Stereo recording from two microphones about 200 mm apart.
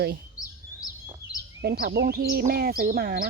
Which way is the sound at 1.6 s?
50° right (ahead or behind).